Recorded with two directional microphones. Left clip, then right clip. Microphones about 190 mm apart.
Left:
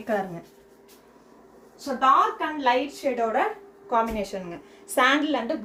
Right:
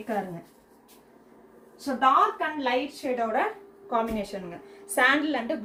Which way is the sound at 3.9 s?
25° left (ahead or behind).